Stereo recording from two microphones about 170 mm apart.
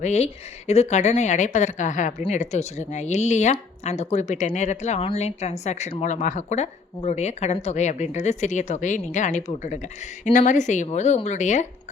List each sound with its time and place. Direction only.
0.0 s speech: 40° left (ahead or behind)